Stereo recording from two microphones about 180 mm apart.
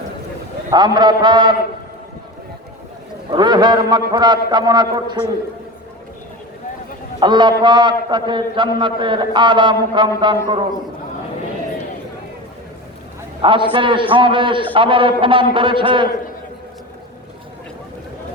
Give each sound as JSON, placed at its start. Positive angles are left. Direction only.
{"t": 0.7, "sound": "a man's voice", "side_deg": -25}
{"t": 3.2, "sound": "a man's voice", "side_deg": -25}
{"t": 7.2, "sound": "a man's voice", "side_deg": -25}
{"t": 13.4, "sound": "a man's voice", "side_deg": -30}